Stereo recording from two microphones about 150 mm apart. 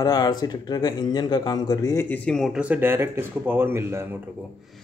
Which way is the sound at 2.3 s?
Centre (ahead or behind).